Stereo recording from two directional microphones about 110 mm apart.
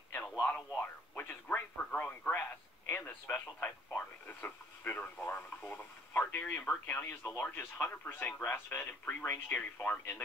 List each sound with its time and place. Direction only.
0.1 s radio: 15° left (ahead or behind)
8.5 s speech: 15° left (ahead or behind)